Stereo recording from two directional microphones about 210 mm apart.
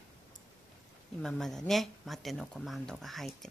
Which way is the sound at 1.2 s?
Centre (ahead or behind).